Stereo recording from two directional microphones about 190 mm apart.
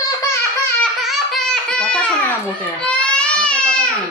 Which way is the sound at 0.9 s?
Centre (ahead or behind).